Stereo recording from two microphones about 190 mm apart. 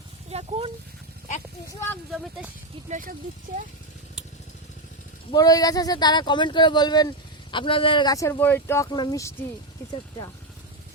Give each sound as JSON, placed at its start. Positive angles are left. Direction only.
{"t": 0.3, "sound": "a sound", "side_deg": -30}
{"t": 2.9, "sound": "speech", "side_deg": -45}
{"t": 5.3, "sound": "speech", "side_deg": 20}